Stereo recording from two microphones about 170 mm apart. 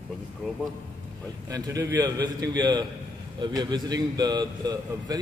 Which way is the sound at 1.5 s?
20° right (ahead or behind).